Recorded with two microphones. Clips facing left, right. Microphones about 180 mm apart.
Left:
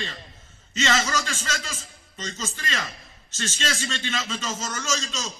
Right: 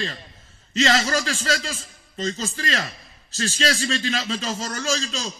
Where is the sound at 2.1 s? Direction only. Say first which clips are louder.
Right 7 dB; 40° right (ahead or behind).